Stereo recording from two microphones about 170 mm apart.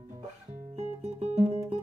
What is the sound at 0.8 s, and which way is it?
Guitar, 40° right (ahead or behind).